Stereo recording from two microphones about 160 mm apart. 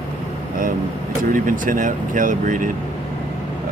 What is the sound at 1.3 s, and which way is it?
Speech, 55° right (ahead or behind).